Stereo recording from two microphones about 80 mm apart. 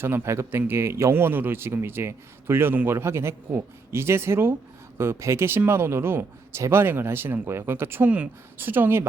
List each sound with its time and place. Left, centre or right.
0.0 s a man's voice: right